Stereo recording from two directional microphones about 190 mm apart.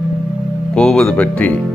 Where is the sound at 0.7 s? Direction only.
5° left (ahead or behind).